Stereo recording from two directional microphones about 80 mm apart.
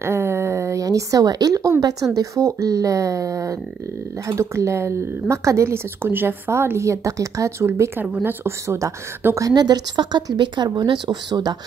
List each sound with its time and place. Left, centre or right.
0.0 s a sound: right
2.1 s speech: right
8.0 s speech: right
9.5 s speech: right